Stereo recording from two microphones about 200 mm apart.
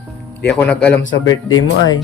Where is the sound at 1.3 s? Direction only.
90° left.